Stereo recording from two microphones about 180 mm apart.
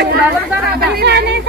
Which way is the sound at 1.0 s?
65° right (ahead or behind).